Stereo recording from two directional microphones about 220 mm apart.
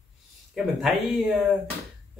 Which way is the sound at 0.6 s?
Centre (ahead or behind).